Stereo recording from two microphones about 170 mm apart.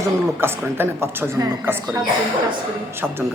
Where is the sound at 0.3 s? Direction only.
15° right (ahead or behind).